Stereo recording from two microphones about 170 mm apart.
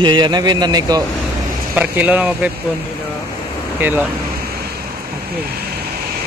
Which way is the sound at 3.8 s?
10° right (ahead or behind).